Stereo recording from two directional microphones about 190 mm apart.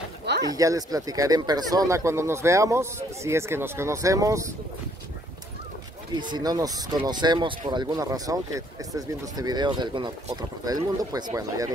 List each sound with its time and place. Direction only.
0.5 s speech: 20° right (ahead or behind)
6.1 s speech: 25° right (ahead or behind)